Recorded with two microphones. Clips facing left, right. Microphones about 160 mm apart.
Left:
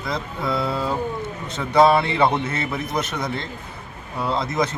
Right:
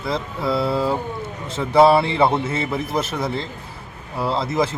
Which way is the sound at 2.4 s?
30° right (ahead or behind).